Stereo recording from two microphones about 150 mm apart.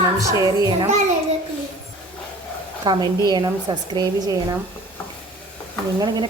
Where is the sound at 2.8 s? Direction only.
30° right (ahead or behind).